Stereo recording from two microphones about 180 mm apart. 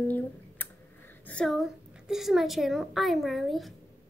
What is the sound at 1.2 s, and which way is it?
A woman's voice, 5° left (ahead or behind).